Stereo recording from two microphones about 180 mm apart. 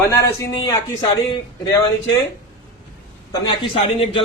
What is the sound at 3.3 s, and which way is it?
Speech, 30° left (ahead or behind).